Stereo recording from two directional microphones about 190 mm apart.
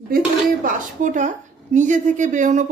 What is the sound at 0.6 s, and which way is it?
Speech, 40° right (ahead or behind).